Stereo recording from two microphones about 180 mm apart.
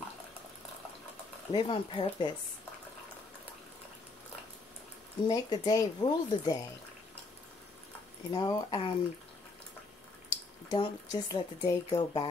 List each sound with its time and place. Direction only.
1.5 s speech: 30° left (ahead or behind)
5.2 s speech: 20° left (ahead or behind)
8.3 s speech: 20° left (ahead or behind)
10.7 s speech: 25° left (ahead or behind)